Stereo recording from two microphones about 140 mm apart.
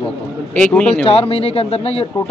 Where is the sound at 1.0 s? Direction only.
45° left (ahead or behind).